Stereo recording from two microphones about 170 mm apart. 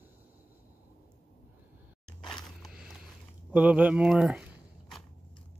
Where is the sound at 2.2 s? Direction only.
25° left (ahead or behind).